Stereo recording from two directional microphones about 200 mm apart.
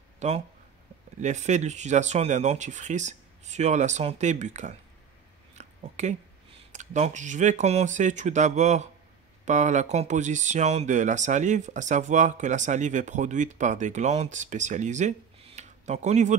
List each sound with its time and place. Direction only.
0.2 s speech: 35° right (ahead or behind)
5.6 s a sound: 35° right (ahead or behind)
6.7 s speech: 35° right (ahead or behind)